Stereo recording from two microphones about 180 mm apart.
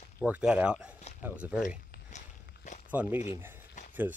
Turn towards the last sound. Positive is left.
turn(degrees=45)  # may be behind; listen again after turning